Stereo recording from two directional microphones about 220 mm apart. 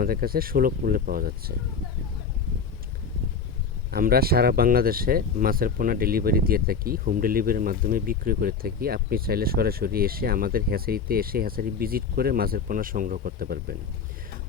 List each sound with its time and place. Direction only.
0.0 s speech: 45° right (ahead or behind)
3.9 s speech: 45° right (ahead or behind)